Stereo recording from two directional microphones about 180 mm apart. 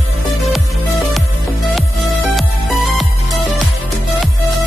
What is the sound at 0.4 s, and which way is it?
Music, centre (ahead or behind).